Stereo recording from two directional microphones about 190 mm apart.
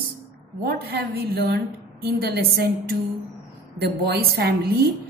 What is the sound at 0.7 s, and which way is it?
A woman's voice, 55° right (ahead or behind).